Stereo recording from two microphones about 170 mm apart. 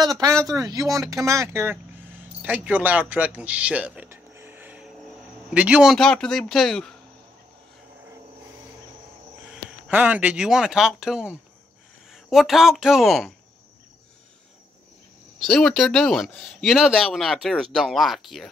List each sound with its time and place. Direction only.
0.0 s speech: 20° right (ahead or behind); by 7.0 s 5° left (ahead or behind)
9.5 s speech: 10° right (ahead or behind)
15.4 s speech: 5° left (ahead or behind)